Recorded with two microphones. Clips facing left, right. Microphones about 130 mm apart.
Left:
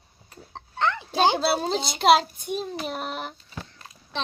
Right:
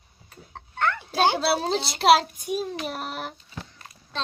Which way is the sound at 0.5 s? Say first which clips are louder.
Even; 20° left (ahead or behind).